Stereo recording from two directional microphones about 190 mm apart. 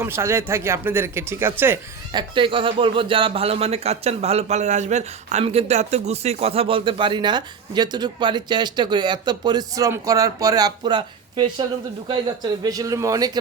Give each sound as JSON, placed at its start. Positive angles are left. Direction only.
{"t": 0.0, "sound": "speech", "side_deg": -15}
{"t": 2.1, "sound": "speech", "side_deg": -25}